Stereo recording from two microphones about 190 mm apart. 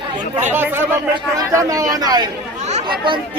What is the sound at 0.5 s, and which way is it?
Speech, 10° right (ahead or behind).